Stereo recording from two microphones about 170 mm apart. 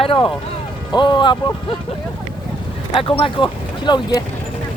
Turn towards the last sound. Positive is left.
turn(degrees=25)  # may be behind; listen again after turning